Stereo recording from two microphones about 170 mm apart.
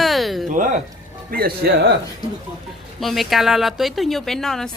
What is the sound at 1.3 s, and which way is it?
Speech, 60° right (ahead or behind).